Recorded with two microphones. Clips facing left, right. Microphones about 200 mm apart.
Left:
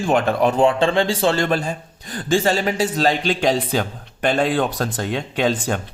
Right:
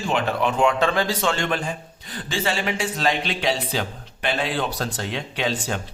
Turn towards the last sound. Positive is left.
turn(degrees=50)  # may be behind; listen again after turning